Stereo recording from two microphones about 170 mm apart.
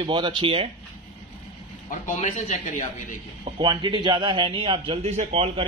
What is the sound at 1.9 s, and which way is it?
Speech, 50° left (ahead or behind).